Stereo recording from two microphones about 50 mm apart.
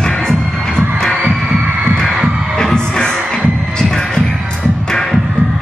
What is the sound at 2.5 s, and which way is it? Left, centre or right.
Music, centre.